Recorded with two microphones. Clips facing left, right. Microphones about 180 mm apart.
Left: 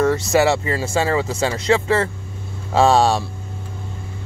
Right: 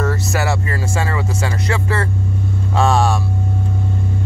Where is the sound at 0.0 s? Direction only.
20° left (ahead or behind).